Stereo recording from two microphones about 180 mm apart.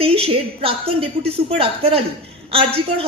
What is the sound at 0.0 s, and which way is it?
A woman's voice, 30° right (ahead or behind).